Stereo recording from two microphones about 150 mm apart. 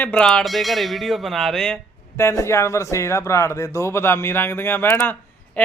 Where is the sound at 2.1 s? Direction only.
20° left (ahead or behind).